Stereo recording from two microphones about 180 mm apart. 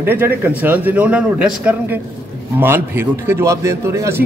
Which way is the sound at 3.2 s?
15° right (ahead or behind).